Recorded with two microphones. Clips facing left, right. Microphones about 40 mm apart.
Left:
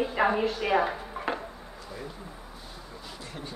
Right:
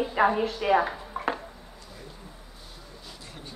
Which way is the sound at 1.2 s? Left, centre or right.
Centre.